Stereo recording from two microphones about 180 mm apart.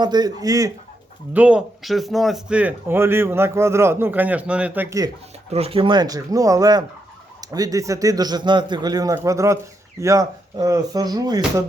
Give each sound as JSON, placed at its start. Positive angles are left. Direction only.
{"t": 0.0, "sound": "a man's voice", "side_deg": -25}
{"t": 1.3, "sound": "speech", "side_deg": -5}
{"t": 5.5, "sound": "a man's voice", "side_deg": -35}